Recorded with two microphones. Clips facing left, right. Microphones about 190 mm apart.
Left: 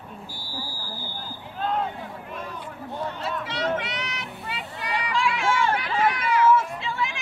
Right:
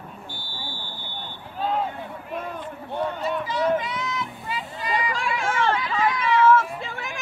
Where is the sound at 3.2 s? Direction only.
75° left (ahead or behind).